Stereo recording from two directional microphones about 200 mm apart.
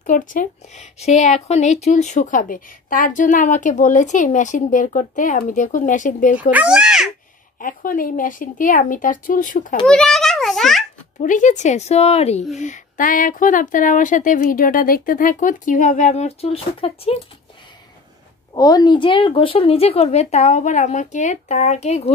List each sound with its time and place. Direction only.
0.0 s a woman's voice: 40° left (ahead or behind)
6.5 s a child's voice: 5° right (ahead or behind)
7.5 s a woman's voice: 45° left (ahead or behind)
9.8 s a child's voice: centre (ahead or behind)
11.1 s a woman's voice: 40° left (ahead or behind)
18.5 s a woman's voice: 20° left (ahead or behind)